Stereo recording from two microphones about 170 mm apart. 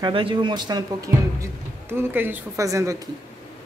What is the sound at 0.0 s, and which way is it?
A man's voice, 30° right (ahead or behind).